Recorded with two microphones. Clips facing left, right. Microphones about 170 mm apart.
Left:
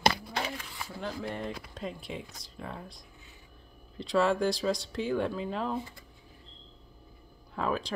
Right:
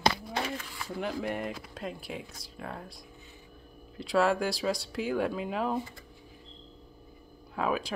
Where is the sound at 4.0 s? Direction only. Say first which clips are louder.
Even; 5° right (ahead or behind).